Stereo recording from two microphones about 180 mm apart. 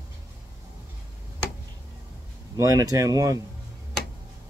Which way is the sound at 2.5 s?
20° right (ahead or behind).